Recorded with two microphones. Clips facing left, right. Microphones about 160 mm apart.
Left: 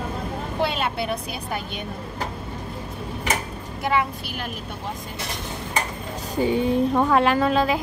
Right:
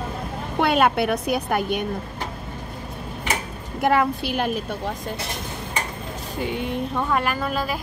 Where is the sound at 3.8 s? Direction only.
55° right (ahead or behind); by 4.5 s 80° right.